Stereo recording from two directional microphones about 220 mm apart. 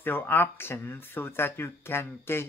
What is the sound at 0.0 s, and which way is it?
Speech, 10° left (ahead or behind).